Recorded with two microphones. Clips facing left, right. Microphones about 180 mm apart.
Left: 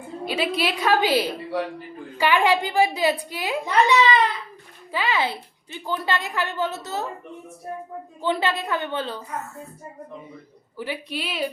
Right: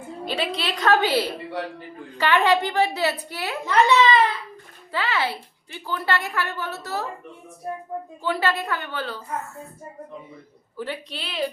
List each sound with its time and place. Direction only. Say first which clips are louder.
0.3 s a child's voice: left 3 dB; 10° left (ahead or behind)
8.2 s a woman's voice: left 1 dB; 20° left (ahead or behind)
10.8 s a child's voice: left 2 dB; 10° left (ahead or behind)